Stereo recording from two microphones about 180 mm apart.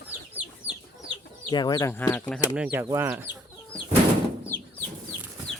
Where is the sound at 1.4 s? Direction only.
25° left (ahead or behind).